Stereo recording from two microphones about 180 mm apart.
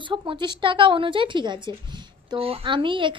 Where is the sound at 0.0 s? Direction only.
25° right (ahead or behind).